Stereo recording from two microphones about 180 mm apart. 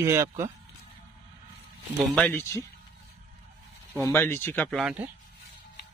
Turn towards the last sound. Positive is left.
turn(degrees=-5)  # may be behind; listen again after turning